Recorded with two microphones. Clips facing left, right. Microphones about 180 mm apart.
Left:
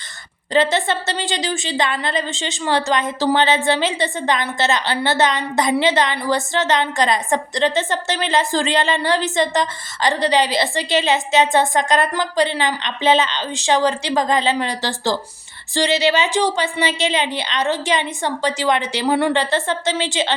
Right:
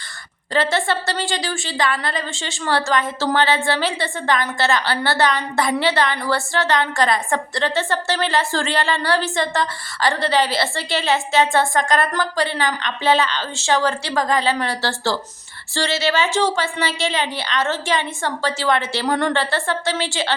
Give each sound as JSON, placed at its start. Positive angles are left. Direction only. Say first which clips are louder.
{"t": 0.5, "sound": "a woman's voice", "louder": "left 2 dB", "side_deg": 20}